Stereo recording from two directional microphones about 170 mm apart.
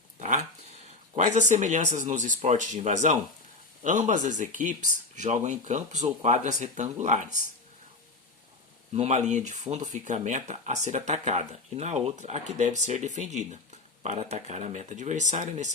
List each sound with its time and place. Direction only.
0.2 s a sound: 45° right (ahead or behind)
1.1 s speech: 45° right (ahead or behind)
8.9 s speech: 40° right (ahead or behind)